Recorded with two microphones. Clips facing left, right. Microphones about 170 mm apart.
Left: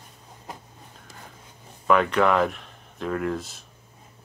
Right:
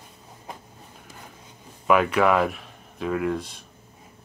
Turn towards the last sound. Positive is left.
turn(degrees=0)  # may be behind; listen again after turning